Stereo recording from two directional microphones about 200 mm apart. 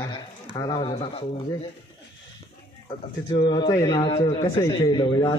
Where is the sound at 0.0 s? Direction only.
20° left (ahead or behind).